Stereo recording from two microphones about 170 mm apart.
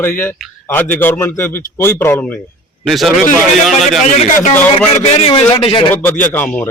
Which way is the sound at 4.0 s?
45° left (ahead or behind).